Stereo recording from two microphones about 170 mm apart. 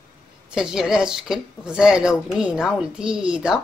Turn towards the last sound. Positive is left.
turn(degrees=-5)  # may be behind; listen again after turning